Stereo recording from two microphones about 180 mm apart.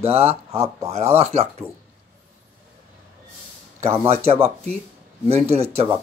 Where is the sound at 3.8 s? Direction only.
35° right (ahead or behind).